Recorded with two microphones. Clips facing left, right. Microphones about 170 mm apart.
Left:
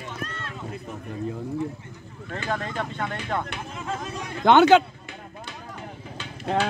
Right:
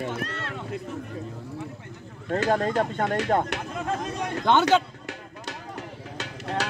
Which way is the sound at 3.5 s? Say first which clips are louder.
Right 3 dB; 65° right (ahead or behind).